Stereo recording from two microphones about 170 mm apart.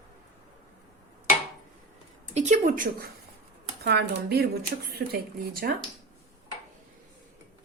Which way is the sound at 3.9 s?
70° right (ahead or behind).